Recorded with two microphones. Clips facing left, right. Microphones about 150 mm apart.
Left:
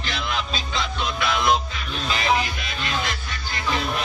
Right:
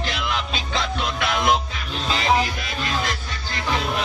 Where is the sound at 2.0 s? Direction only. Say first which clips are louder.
Right 2 dB; 35° right (ahead or behind).